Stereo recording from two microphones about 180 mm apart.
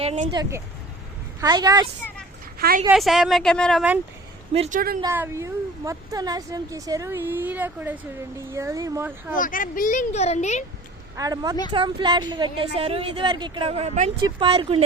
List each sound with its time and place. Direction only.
0.0 s speech: 35° right (ahead or behind)
1.4 s a woman's voice: 20° right (ahead or behind)
2.6 s a woman's voice: 55° right (ahead or behind)
2.9 s speech: centre (ahead or behind)
4.5 s speech: 35° right (ahead or behind)
5.1 s speech: 15° right (ahead or behind)
9.4 s speech: 50° left (ahead or behind)
11.2 s a woman's voice: 20° right (ahead or behind); by 14.1 s 40° right (ahead or behind)
14.3 s a woman's voice: 30° right (ahead or behind)